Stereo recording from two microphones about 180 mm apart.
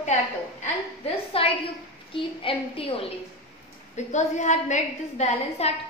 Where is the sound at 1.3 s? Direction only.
30° left (ahead or behind).